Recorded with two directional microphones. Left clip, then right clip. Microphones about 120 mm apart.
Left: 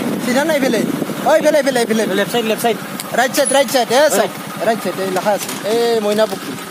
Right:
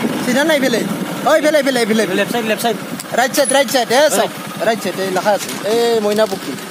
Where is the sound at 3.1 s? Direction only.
30° right (ahead or behind).